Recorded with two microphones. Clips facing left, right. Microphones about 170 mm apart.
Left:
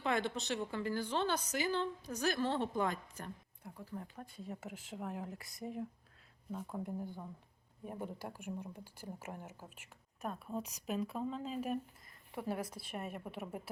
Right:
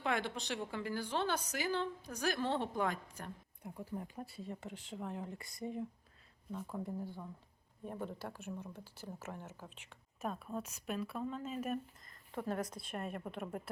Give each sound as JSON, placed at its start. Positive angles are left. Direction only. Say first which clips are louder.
{"t": 0.0, "sound": "a woman's voice", "louder": "left 2 dB", "side_deg": -10}
{"t": 7.9, "sound": "speech", "louder": "right 1 dB", "side_deg": 15}
{"t": 10.5, "sound": "speech", "louder": "left 1 dB", "side_deg": 20}